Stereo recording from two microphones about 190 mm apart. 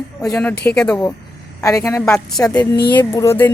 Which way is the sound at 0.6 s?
5° left (ahead or behind).